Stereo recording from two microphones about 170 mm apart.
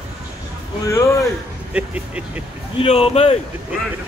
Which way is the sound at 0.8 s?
15° left (ahead or behind).